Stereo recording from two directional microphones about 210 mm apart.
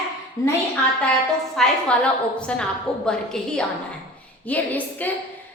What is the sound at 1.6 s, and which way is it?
A woman's voice, 5° left (ahead or behind).